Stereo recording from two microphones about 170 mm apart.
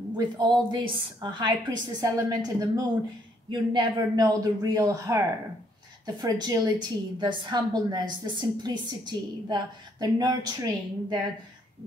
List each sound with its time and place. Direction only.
0.1 s a woman's voice: 25° right (ahead or behind)